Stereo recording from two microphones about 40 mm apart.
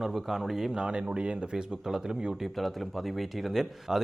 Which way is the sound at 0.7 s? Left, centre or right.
Right.